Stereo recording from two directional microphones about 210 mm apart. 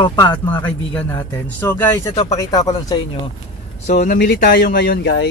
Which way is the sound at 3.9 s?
40° left (ahead or behind).